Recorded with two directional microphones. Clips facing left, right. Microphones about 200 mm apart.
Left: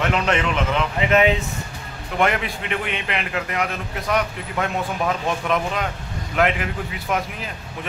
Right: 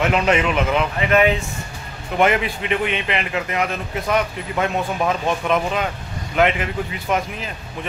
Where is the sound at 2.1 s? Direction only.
5° right (ahead or behind).